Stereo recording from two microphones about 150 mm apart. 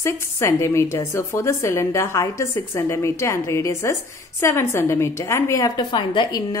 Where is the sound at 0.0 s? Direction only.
20° left (ahead or behind).